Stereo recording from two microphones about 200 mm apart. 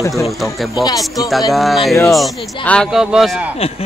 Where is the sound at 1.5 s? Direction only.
Centre (ahead or behind).